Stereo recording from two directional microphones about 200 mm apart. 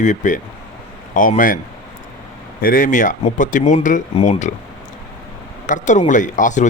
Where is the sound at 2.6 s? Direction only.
45° left (ahead or behind).